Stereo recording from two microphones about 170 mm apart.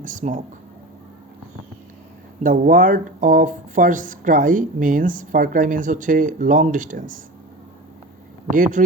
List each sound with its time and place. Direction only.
0.0 s speech: 50° right (ahead or behind)
2.4 s speech: 50° right (ahead or behind)
8.4 s speech: 50° right (ahead or behind)